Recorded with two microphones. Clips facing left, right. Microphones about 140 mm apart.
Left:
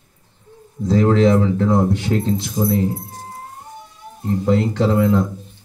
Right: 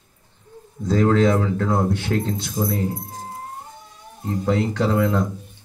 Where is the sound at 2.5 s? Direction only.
10° left (ahead or behind).